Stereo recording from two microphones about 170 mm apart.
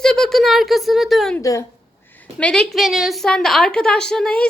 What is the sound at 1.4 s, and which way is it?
Speech, 20° left (ahead or behind).